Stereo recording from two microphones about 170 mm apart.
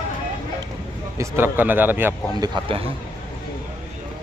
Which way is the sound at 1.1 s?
15° right (ahead or behind).